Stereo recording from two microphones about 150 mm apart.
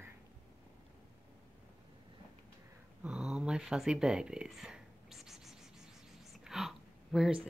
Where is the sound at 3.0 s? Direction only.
5° right (ahead or behind).